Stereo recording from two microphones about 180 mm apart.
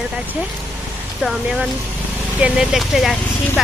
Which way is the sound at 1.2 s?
5° right (ahead or behind).